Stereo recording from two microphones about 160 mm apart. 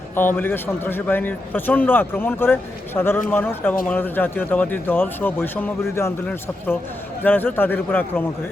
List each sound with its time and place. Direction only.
0.2 s a man's voice: 10° left (ahead or behind)